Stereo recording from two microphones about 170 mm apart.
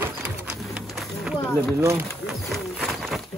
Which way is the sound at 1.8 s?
15° right (ahead or behind).